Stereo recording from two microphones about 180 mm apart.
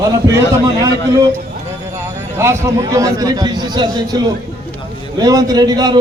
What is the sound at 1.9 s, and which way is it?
A man's voice, 15° right (ahead or behind).